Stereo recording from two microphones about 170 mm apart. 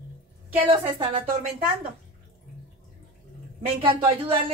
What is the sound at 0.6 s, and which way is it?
Speech, 30° right (ahead or behind).